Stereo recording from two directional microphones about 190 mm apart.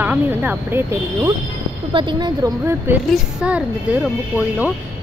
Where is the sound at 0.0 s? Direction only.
10° right (ahead or behind).